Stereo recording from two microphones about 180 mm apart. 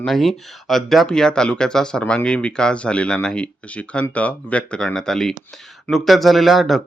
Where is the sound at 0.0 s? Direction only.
Centre (ahead or behind).